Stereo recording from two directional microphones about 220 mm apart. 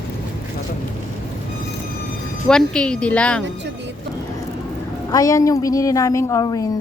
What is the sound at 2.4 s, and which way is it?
Speech, 5° left (ahead or behind).